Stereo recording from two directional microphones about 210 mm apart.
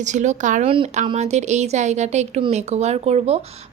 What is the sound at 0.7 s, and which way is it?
A woman's voice, 25° right (ahead or behind).